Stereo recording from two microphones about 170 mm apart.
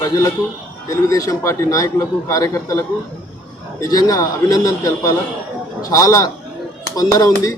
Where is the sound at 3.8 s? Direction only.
20° left (ahead or behind).